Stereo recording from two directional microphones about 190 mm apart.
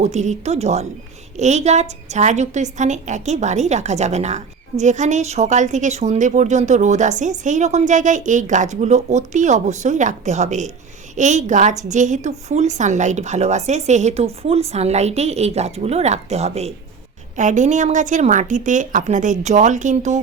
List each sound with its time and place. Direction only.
0.0 s a woman's voice: 40° right (ahead or behind)